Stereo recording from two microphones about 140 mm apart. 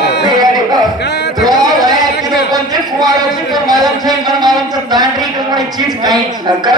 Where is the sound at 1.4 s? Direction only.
30° right (ahead or behind).